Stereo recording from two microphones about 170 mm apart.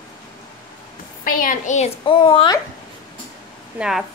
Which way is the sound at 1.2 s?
55° left (ahead or behind).